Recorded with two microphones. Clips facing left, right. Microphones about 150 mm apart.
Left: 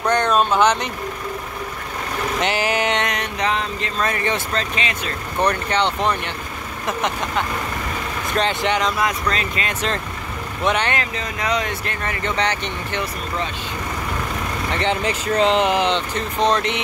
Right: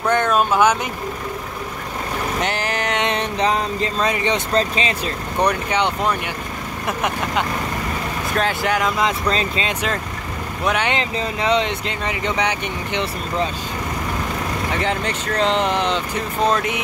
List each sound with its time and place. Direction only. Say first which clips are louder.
0.0 s speech: even; 5° right (ahead or behind)
2.4 s speech: left 6 dB; 5° left (ahead or behind)
3.1 s a sound: right 3 dB; 30° right (ahead or behind)
4.0 s speech: right 1 dB; 20° right (ahead or behind)
4.6 s speech: right 5 dB; 30° right (ahead or behind)
5.4 s speech: even; 10° right (ahead or behind)
8.9 s speech: right 2 dB; 25° right (ahead or behind)
10.6 s speech: left 1 dB; centre (ahead or behind)
10.9 s speech: right 3 dB; 25° right (ahead or behind)
14.8 s speech: left 1 dB; centre (ahead or behind)